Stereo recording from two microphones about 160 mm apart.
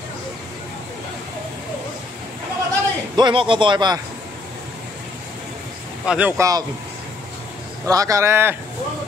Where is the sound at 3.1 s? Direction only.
30° right (ahead or behind).